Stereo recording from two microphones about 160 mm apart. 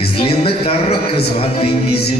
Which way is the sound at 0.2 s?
35° left (ahead or behind).